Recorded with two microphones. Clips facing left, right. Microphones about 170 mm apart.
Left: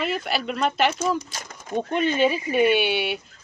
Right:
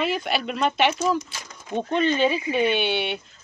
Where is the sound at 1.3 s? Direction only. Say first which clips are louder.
Left 2 dB; 45° left (ahead or behind).